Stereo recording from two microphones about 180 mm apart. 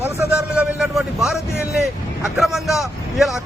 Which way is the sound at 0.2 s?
5° right (ahead or behind).